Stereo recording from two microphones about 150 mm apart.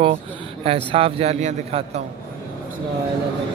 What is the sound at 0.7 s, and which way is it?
Speech, 40° right (ahead or behind).